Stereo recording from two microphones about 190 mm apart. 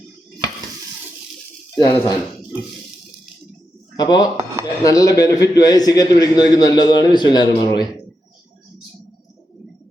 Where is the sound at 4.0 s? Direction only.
20° left (ahead or behind).